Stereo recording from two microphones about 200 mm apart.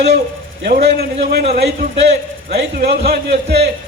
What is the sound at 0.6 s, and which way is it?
A man's voice, 55° right (ahead or behind).